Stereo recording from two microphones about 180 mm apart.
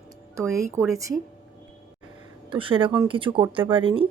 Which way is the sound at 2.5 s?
30° right (ahead or behind).